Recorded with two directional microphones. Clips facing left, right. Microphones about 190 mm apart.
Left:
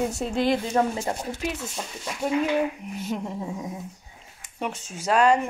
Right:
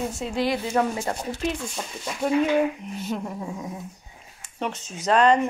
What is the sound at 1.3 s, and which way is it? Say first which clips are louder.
Speech: right 3 dB; 10° left (ahead or behind).